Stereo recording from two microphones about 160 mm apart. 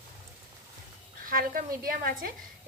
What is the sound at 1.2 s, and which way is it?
A woman's voice, 60° right (ahead or behind).